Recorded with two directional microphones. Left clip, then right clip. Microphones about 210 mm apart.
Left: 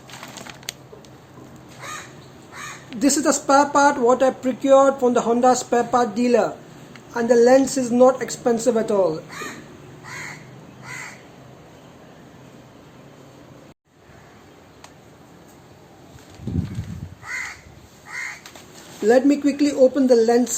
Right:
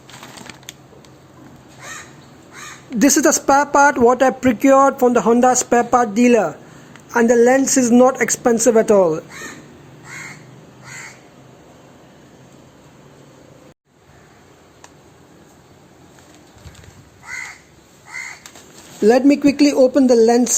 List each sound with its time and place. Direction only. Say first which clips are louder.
2.9 s speech: right 5 dB; 40° right (ahead or behind)
19.0 s speech: right 4 dB; 40° right (ahead or behind)